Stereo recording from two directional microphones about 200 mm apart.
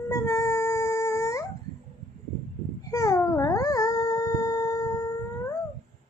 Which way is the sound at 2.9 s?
15° left (ahead or behind).